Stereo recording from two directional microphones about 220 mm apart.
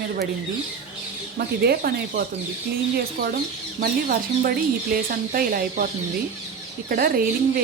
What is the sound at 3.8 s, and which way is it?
A woman's voice, 40° right (ahead or behind).